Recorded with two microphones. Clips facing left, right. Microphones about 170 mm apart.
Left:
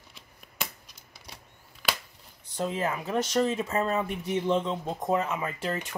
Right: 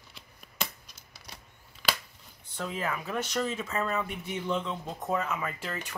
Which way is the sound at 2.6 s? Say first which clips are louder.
Left 4 dB; 25° left (ahead or behind).